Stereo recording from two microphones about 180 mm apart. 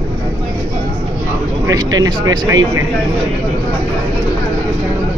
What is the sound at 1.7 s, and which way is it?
Speech, 20° right (ahead or behind).